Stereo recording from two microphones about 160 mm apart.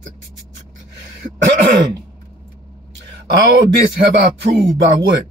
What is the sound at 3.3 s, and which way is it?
Speech, 90° right.